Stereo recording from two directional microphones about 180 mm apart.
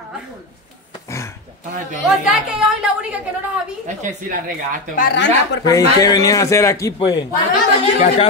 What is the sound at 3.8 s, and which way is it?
Speech, 45° right (ahead or behind).